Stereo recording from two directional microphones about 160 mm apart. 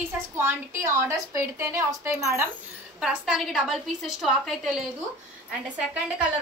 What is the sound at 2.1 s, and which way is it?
A woman's voice, 5° right (ahead or behind).